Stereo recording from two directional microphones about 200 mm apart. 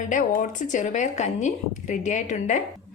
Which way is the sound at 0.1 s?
40° left (ahead or behind).